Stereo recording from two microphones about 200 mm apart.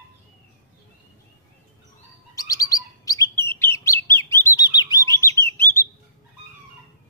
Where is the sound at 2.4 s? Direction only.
15° left (ahead or behind).